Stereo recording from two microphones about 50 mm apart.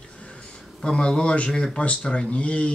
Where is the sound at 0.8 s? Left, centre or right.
Centre.